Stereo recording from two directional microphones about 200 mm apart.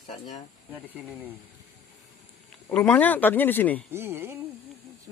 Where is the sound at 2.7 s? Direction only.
5° left (ahead or behind).